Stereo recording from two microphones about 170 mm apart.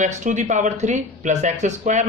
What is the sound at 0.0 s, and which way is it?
Speech, 45° right (ahead or behind).